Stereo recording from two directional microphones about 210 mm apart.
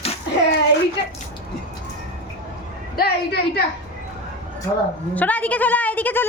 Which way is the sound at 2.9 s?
50° left (ahead or behind).